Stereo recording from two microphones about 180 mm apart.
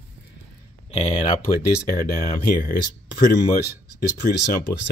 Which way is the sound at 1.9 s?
55° left (ahead or behind).